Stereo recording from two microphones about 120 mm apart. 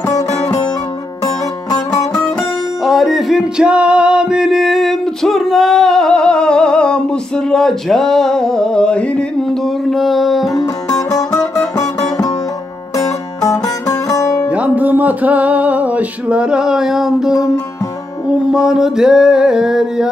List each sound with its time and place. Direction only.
1.9 s music: 5° left (ahead or behind)
10.9 s music: 25° left (ahead or behind)
14.5 s music: 10° right (ahead or behind)
18.5 s music: 5° right (ahead or behind)